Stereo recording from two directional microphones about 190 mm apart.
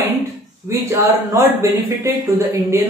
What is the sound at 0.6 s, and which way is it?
Speech, 15° right (ahead or behind).